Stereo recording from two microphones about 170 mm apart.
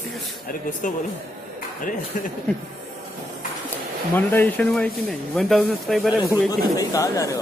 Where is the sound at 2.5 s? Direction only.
10° left (ahead or behind).